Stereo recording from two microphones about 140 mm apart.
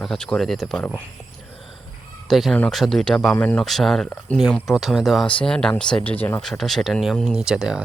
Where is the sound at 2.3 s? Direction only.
Centre (ahead or behind).